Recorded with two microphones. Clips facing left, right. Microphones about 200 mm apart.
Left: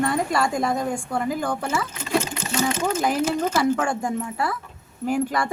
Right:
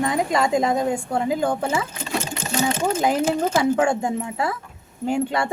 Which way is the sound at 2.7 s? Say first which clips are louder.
Right 2 dB; 30° right (ahead or behind).